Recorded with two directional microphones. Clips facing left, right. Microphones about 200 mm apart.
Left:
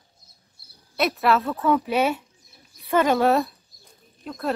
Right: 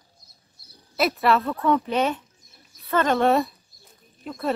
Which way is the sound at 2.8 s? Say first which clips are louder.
Left 1 dB; 10° left (ahead or behind).